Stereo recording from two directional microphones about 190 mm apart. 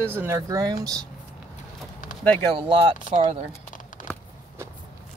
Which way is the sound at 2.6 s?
25° right (ahead or behind).